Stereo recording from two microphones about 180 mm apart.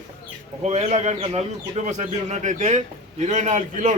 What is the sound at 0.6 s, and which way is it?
Speech, 40° right (ahead or behind).